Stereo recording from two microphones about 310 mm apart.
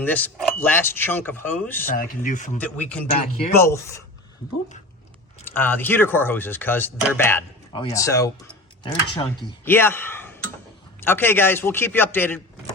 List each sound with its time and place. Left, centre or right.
0.0 s speech: centre
1.9 s speech: left
2.6 s speech: centre
5.5 s speech: centre